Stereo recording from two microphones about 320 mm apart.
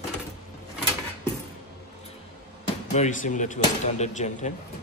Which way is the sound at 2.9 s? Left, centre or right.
Left.